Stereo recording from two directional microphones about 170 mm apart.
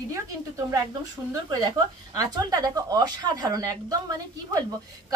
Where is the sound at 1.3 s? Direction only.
20° right (ahead or behind).